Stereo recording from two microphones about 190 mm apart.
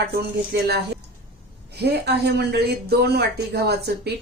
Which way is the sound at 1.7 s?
60° right (ahead or behind).